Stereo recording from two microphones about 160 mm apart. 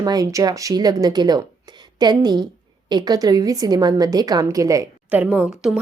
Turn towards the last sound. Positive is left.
turn(degrees=-5)  # may be behind; listen again after turning